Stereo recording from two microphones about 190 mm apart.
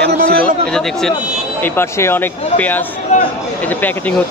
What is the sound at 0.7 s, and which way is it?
Speech, 5° left (ahead or behind).